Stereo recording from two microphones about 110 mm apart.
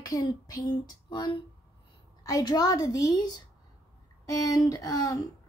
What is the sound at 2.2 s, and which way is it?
A woman's voice, 30° left (ahead or behind).